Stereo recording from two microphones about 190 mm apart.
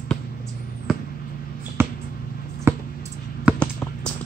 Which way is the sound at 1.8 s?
10° right (ahead or behind).